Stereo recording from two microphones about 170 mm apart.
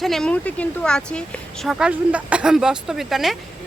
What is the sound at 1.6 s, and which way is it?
Speech, 5° right (ahead or behind).